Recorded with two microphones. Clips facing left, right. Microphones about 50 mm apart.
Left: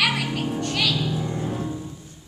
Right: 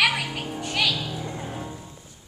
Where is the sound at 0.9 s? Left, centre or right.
Centre.